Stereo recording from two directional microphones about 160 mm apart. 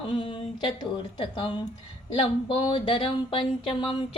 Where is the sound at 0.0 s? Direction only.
35° left (ahead or behind).